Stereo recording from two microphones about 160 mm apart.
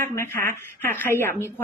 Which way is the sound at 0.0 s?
15° left (ahead or behind).